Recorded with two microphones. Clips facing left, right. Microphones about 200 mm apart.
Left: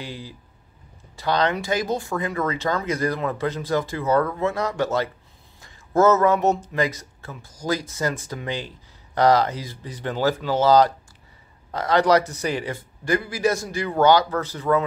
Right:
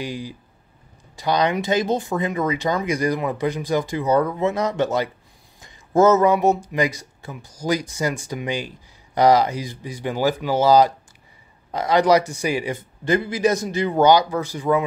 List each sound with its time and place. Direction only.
0.0 s speech: 15° right (ahead or behind)